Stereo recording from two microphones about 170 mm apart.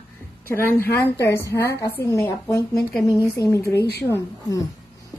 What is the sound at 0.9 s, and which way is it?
A woman's voice, 15° left (ahead or behind).